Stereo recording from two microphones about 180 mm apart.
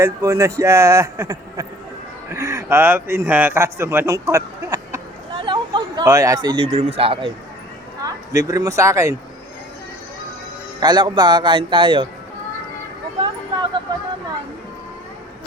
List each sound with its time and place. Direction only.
0.0 s a man's voice: 15° right (ahead or behind)
6.7 s speech: 35° right (ahead or behind)
8.0 s speech: 20° right (ahead or behind)
10.8 s speech: 25° right (ahead or behind)
13.2 s a sound: 20° right (ahead or behind)